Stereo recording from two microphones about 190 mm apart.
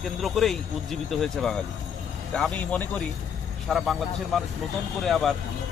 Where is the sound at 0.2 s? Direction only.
Centre (ahead or behind).